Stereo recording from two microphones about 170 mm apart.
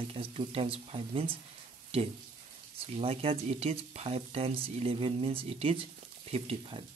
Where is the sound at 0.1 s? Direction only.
35° right (ahead or behind).